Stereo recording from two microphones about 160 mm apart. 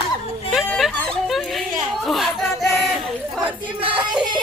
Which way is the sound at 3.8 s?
30° right (ahead or behind).